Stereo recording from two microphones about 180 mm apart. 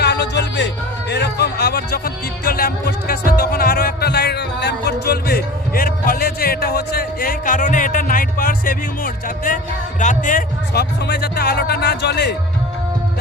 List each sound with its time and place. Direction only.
0.0 s music: 70° left (ahead or behind); by 9.6 s 50° left (ahead or behind)
10.0 s speech: 45° left (ahead or behind)
11.0 s speech: 65° left (ahead or behind)